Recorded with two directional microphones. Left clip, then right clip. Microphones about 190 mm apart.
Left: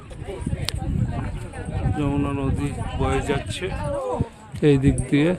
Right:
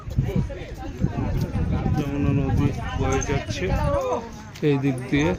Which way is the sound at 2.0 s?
20° left (ahead or behind).